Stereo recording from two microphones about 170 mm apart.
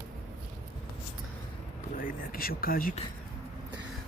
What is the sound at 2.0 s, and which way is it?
Speech, 55° left (ahead or behind).